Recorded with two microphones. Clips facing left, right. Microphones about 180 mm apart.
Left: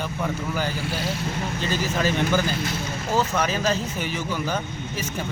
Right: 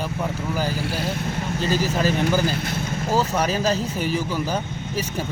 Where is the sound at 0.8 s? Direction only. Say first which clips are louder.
Right 2 dB; 55° right (ahead or behind).